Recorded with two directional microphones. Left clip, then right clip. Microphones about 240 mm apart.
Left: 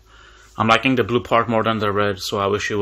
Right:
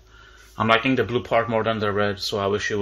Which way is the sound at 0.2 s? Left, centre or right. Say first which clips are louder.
Left 3 dB; left.